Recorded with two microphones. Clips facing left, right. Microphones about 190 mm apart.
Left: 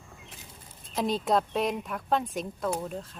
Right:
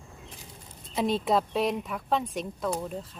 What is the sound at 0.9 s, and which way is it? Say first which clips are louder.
A woman's voice: right 1 dB; centre (ahead or behind).